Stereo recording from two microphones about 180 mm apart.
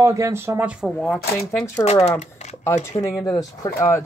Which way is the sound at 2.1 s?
40° left (ahead or behind).